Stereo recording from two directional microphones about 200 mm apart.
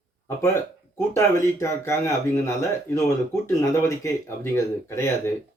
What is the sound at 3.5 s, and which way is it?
Speech, 15° left (ahead or behind).